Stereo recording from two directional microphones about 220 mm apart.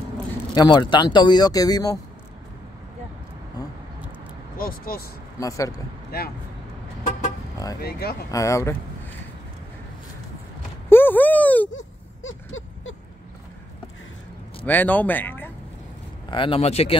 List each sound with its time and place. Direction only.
0.6 s speech: 20° left (ahead or behind)
4.6 s speech: 40° left (ahead or behind)
5.4 s speech: 15° left (ahead or behind)
6.1 s speech: 45° left (ahead or behind)
7.8 s speech: 45° left (ahead or behind)
8.3 s speech: 15° left (ahead or behind)
10.9 s a sound: 10° left (ahead or behind)
11.7 s a sound: 60° left (ahead or behind)
14.7 s speech: 10° left (ahead or behind)
16.3 s speech: 25° left (ahead or behind)